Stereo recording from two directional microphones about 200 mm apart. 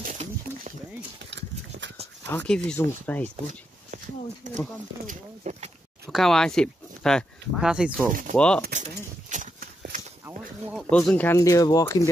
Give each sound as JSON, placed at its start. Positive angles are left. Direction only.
{"t": 0.0, "sound": "a sound", "side_deg": -40}
{"t": 2.2, "sound": "speech", "side_deg": 5}
{"t": 4.4, "sound": "speech", "side_deg": -40}
{"t": 6.0, "sound": "speech", "side_deg": 0}
{"t": 8.1, "sound": "speech", "side_deg": -40}
{"t": 8.4, "sound": "speech", "side_deg": 5}
{"t": 9.3, "sound": "horse", "side_deg": -45}
{"t": 10.2, "sound": "a sound", "side_deg": -5}
{"t": 10.9, "sound": "speech", "side_deg": 5}